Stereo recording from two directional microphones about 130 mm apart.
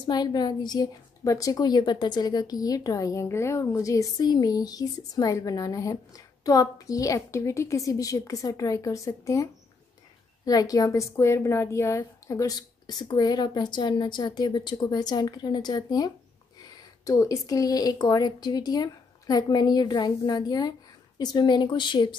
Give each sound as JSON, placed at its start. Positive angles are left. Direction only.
{"t": 0.0, "sound": "a woman's voice", "side_deg": 30}